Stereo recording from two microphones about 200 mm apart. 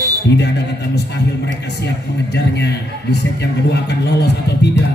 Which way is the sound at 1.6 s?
60° left (ahead or behind).